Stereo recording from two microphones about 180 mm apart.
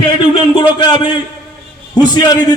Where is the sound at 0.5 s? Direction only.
25° left (ahead or behind).